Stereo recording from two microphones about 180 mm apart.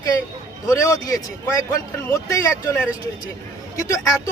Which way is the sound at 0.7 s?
20° left (ahead or behind).